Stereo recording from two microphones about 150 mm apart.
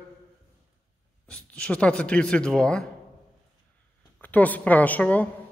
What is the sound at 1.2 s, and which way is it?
A man's voice, 5° left (ahead or behind).